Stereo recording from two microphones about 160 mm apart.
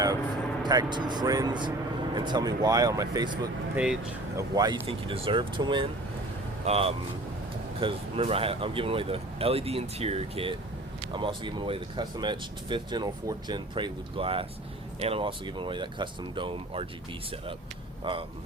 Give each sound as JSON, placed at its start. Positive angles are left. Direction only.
{"t": 0.6, "sound": "speech", "side_deg": -25}
{"t": 3.8, "sound": "speech", "side_deg": -5}
{"t": 4.4, "sound": "speech", "side_deg": -25}
{"t": 4.9, "sound": "speech", "side_deg": -35}
{"t": 18.0, "sound": "speech", "side_deg": -35}